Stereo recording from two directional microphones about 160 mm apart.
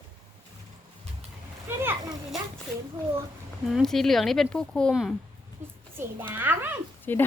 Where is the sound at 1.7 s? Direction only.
15° right (ahead or behind).